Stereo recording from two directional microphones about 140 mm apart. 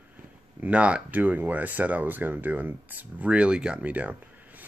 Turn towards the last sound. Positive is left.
turn(degrees=-10)  # may be behind; listen again after turning